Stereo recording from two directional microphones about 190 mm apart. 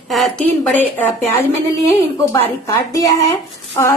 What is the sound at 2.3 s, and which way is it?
A woman's voice, 15° left (ahead or behind).